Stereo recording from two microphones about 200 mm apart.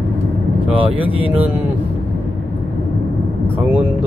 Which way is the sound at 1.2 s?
10° right (ahead or behind).